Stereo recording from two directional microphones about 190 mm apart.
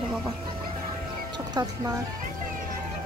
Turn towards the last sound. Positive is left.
turn(degrees=-20)  # may be behind; listen again after turning